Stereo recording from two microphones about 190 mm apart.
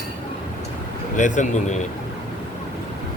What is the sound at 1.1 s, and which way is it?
Speech, 40° left (ahead or behind).